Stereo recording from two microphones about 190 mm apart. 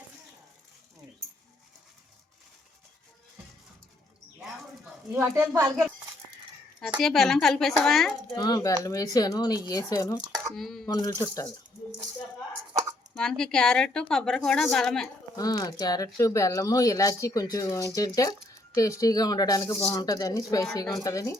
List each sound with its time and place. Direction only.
5.1 s speech: 15° right (ahead or behind)
7.0 s a woman's voice: centre (ahead or behind)
8.4 s speech: 20° left (ahead or behind)
10.5 s a woman's voice: centre (ahead or behind)
10.8 s speech: 20° left (ahead or behind)
13.1 s a woman's voice: 5° left (ahead or behind)
15.4 s speech: 20° left (ahead or behind)
19.7 s speech: 10° left (ahead or behind)
20.0 s speech: 20° left (ahead or behind)